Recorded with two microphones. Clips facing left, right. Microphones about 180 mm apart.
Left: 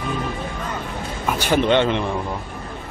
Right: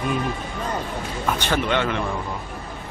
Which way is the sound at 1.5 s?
25° left (ahead or behind).